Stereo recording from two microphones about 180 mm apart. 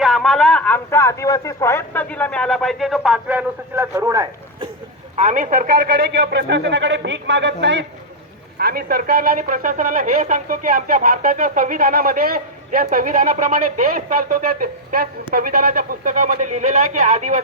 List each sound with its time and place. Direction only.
0.0 s speech: centre (ahead or behind); by 4.7 s 20° right (ahead or behind)
5.1 s a man's voice: 45° right (ahead or behind); by 7.9 s 85° right
8.5 s speech: 60° right (ahead or behind)